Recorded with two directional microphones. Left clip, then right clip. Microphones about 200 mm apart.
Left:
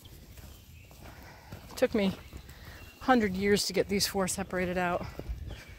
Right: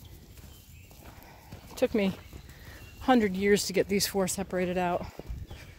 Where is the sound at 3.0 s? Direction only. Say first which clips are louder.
Right 1 dB; 30° right (ahead or behind).